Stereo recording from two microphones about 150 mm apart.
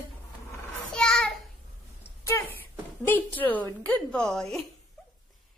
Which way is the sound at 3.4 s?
10° left (ahead or behind).